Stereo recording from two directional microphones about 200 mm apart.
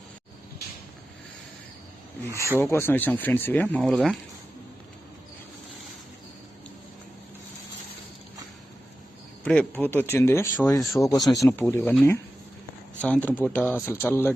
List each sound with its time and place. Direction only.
2.5 s speech: 10° left (ahead or behind)
9.4 s speech: 5° left (ahead or behind)
11.2 s speech: centre (ahead or behind)
11.4 s speech: 10° left (ahead or behind)
13.0 s speech: 10° left (ahead or behind)